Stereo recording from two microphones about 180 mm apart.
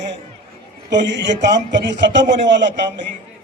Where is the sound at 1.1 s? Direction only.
75° right (ahead or behind).